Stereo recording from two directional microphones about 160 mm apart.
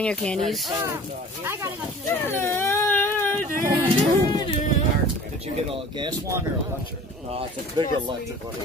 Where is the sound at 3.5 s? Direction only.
60° right (ahead or behind).